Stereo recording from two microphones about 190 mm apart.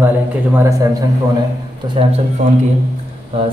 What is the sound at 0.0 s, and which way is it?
Speech, 10° right (ahead or behind).